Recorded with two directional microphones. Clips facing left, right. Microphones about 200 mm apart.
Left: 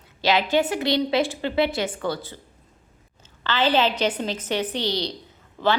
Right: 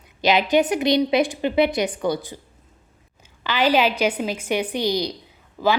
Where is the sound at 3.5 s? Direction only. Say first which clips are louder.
Right 2 dB; 10° right (ahead or behind).